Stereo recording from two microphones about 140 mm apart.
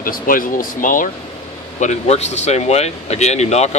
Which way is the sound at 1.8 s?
55° left (ahead or behind).